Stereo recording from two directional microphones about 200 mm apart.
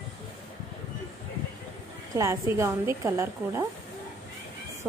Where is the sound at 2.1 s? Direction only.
15° right (ahead or behind).